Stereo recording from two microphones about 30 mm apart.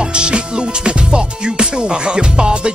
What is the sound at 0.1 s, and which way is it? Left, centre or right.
Music, right.